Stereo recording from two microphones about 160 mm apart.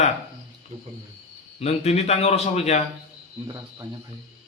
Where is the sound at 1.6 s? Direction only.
40° left (ahead or behind).